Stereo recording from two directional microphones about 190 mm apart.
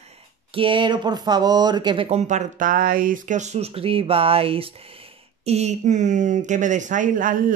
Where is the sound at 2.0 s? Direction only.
35° right (ahead or behind).